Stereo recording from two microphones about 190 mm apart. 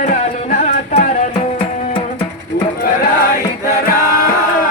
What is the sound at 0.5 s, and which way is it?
Music, 45° left (ahead or behind).